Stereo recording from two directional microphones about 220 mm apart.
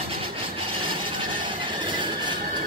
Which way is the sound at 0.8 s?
20° right (ahead or behind).